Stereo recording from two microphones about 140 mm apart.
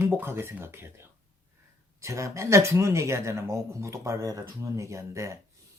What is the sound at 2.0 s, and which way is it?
Speech, 20° right (ahead or behind).